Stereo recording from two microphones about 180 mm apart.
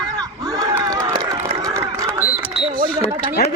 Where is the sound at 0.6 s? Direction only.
20° right (ahead or behind).